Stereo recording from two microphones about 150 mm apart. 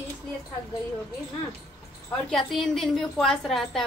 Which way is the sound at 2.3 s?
Centre (ahead or behind).